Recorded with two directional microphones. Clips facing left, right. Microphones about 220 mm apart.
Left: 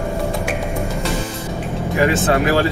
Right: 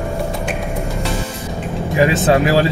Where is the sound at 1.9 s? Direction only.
15° right (ahead or behind).